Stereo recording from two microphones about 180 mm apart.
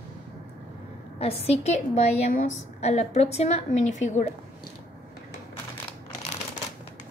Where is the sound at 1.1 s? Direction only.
35° left (ahead or behind).